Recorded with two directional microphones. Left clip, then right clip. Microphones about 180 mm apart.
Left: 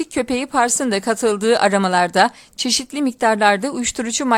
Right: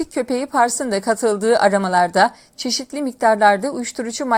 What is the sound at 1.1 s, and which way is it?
A woman's voice, 15° left (ahead or behind).